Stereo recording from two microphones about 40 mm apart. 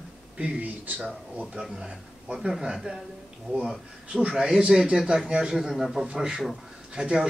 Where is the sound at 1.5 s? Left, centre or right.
Centre.